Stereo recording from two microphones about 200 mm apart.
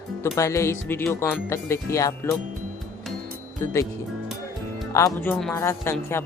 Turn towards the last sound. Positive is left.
turn(degrees=10)  # may be behind; listen again after turning